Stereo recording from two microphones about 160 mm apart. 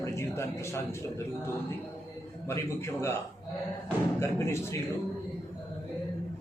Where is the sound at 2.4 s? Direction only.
15° left (ahead or behind).